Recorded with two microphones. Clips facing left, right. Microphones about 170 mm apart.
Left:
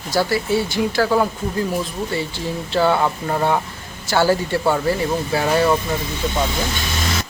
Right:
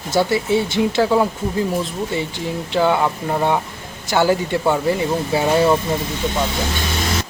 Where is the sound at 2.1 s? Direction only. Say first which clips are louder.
Right 1 dB; 20° right (ahead or behind).